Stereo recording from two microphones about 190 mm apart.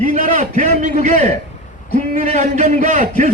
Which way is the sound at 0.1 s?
40° right (ahead or behind).